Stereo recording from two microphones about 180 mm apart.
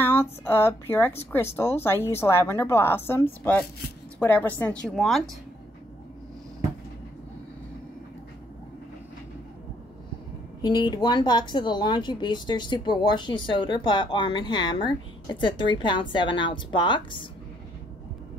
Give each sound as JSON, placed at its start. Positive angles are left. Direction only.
{"t": 0.0, "sound": "speech", "side_deg": 10}
{"t": 10.6, "sound": "speech", "side_deg": 25}